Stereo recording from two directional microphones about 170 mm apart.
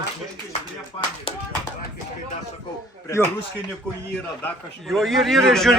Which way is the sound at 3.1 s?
15° left (ahead or behind).